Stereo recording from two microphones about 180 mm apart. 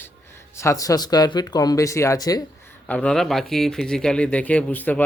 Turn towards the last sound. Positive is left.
turn(degrees=10)  # may be behind; listen again after turning